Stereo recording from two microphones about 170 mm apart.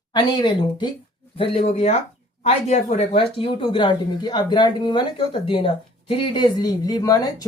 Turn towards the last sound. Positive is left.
turn(degrees=20)  # may be behind; listen again after turning